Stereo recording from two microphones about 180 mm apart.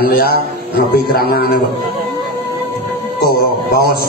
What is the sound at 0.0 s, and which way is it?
A man's voice, 60° left (ahead or behind).